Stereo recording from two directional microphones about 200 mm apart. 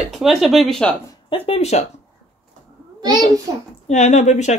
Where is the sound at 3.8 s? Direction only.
35° left (ahead or behind).